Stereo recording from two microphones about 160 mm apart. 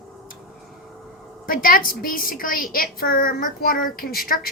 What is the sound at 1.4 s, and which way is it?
A woman's voice, 60° left (ahead or behind).